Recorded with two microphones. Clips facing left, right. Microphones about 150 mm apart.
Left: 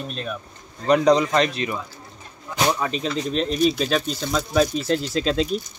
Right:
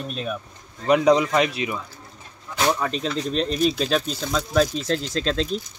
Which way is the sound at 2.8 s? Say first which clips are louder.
Left 1 dB; centre (ahead or behind).